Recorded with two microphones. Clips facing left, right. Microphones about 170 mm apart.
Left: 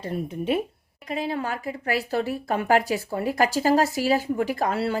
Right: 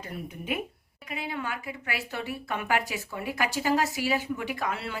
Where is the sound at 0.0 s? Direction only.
30° left (ahead or behind).